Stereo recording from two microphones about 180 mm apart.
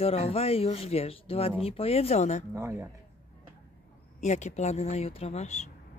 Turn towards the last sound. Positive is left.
turn(degrees=40)  # may be behind; listen again after turning